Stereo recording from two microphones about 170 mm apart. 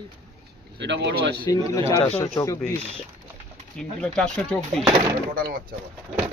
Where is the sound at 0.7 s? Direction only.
90° right.